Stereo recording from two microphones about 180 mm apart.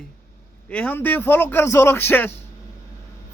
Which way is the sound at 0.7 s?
10° left (ahead or behind).